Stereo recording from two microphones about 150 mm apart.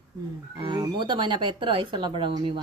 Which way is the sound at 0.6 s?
30° right (ahead or behind).